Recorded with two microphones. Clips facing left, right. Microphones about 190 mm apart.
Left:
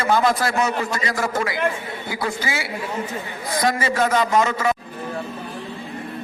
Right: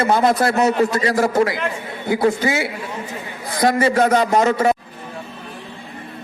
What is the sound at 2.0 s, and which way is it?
Speech, 55° right (ahead or behind).